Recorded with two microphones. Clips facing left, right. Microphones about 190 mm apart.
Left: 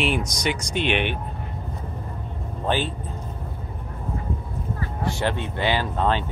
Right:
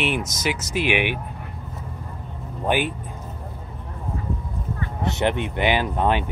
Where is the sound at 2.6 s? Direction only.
15° right (ahead or behind).